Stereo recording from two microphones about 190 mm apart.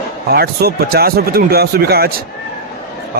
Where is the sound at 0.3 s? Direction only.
55° right (ahead or behind).